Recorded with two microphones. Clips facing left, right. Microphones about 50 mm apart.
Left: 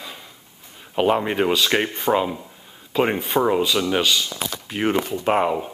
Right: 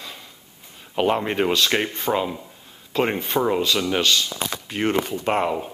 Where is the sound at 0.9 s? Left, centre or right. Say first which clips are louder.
Left 2 dB; centre.